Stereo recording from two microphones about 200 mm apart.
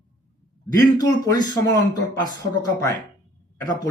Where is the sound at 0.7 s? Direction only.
20° left (ahead or behind).